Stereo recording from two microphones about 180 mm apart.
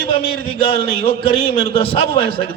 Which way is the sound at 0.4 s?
30° left (ahead or behind).